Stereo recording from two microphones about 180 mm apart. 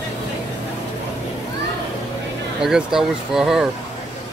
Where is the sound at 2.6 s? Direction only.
5° right (ahead or behind).